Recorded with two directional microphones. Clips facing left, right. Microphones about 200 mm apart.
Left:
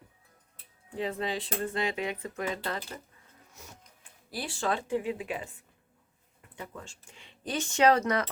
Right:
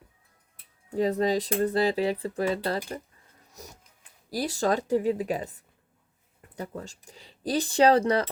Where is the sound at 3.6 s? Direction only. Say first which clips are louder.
Right 6 dB; 40° right (ahead or behind).